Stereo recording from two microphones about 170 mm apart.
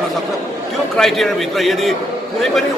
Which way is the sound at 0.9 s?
Centre (ahead or behind).